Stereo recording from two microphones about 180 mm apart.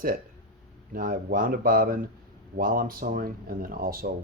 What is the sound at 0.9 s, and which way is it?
Speech, 50° right (ahead or behind).